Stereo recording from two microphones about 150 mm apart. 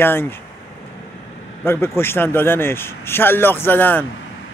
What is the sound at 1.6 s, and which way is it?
Speech, 15° left (ahead or behind).